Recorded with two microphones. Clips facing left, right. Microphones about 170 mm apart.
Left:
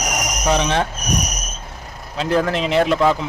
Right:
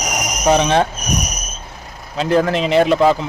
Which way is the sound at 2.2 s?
5° right (ahead or behind).